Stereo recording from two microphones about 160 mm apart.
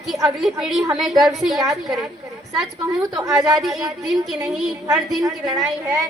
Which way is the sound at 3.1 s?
20° right (ahead or behind).